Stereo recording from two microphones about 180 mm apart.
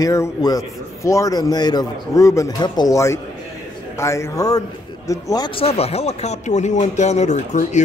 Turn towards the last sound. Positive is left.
turn(degrees=40)  # may be behind; listen again after turning